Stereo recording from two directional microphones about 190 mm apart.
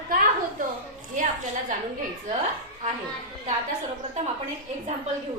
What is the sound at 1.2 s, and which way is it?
Speech, 45° right (ahead or behind).